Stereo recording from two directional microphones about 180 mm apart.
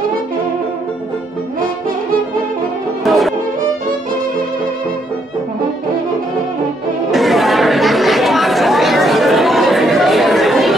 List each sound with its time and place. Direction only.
3.1 s violin: centre (ahead or behind)
7.1 s chatter: centre (ahead or behind)